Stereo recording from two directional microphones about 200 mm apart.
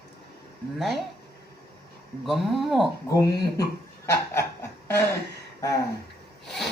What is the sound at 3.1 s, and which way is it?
Speech, 20° left (ahead or behind).